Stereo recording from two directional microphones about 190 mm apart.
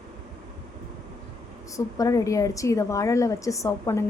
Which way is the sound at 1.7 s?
15° left (ahead or behind).